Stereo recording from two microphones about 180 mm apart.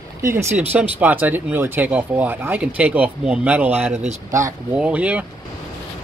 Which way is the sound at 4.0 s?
40° right (ahead or behind).